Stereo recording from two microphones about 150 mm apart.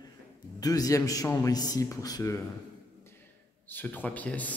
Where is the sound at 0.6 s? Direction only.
25° left (ahead or behind).